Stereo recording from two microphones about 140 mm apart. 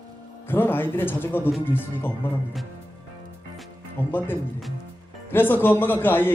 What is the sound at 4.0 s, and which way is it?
Speech, 15° left (ahead or behind).